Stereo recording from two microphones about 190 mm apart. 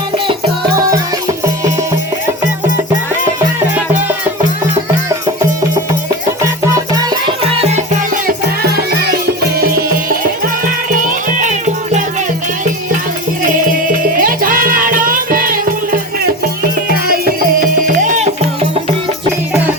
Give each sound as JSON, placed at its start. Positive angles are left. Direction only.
{"t": 6.7, "sound": "music", "side_deg": -20}
{"t": 8.7, "sound": "music", "side_deg": -55}
{"t": 10.9, "sound": "music", "side_deg": -45}
{"t": 14.2, "sound": "music", "side_deg": -45}